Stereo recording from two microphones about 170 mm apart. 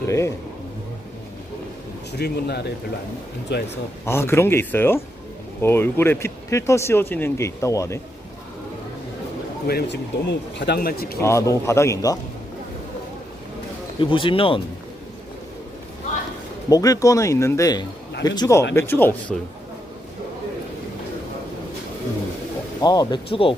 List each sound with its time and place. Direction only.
0.1 s speech: 15° left (ahead or behind)
2.1 s speech: 70° left (ahead or behind)
3.5 s speech: 80° left
4.0 s speech: 15° left (ahead or behind)
9.6 s speech: 80° left; by 11.2 s 60° left (ahead or behind)
11.2 s speech: 15° left (ahead or behind)
14.0 s speech: 30° left (ahead or behind)
16.6 s speech: 20° left (ahead or behind)
22.8 s speech: 25° left (ahead or behind)